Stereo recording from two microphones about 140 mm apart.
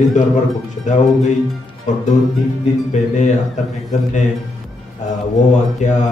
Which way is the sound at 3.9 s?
55° left (ahead or behind).